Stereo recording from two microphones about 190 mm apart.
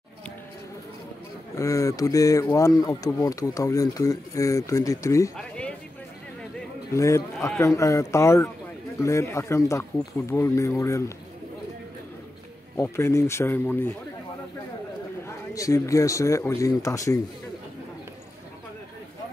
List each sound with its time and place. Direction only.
1.5 s speech: 15° left (ahead or behind)
5.4 s a sound: 5° left (ahead or behind)
6.9 s speech: 15° left (ahead or behind)
12.7 s speech: 15° left (ahead or behind)
15.2 s speech: 15° left (ahead or behind)